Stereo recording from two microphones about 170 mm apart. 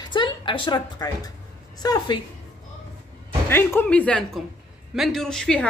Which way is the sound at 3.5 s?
15° left (ahead or behind).